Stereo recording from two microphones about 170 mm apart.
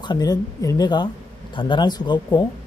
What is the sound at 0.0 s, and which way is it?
Speech, 25° left (ahead or behind).